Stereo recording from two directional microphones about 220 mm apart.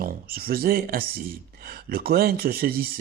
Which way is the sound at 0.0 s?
45° right (ahead or behind).